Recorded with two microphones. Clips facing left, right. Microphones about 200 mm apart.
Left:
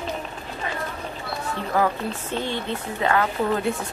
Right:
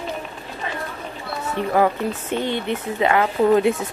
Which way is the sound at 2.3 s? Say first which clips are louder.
Right 4 dB; 15° right (ahead or behind).